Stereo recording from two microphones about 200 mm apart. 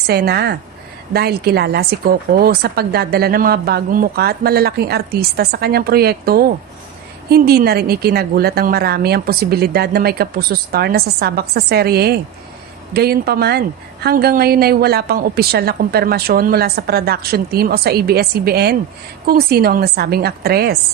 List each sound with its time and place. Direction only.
0.1 s speech: 50° right (ahead or behind)